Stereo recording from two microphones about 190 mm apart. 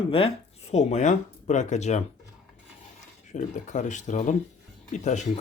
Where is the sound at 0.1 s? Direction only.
30° left (ahead or behind).